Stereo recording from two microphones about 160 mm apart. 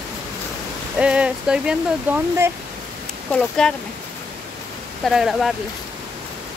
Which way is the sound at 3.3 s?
5° left (ahead or behind).